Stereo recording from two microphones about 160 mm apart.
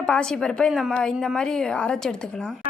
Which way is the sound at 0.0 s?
5° left (ahead or behind).